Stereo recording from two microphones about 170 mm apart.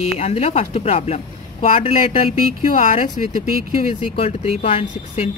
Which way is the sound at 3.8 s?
35° left (ahead or behind).